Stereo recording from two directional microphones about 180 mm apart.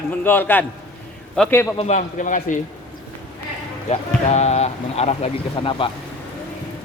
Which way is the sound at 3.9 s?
35° left (ahead or behind).